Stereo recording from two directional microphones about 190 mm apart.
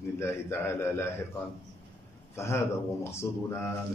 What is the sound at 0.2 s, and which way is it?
Speech, 15° left (ahead or behind).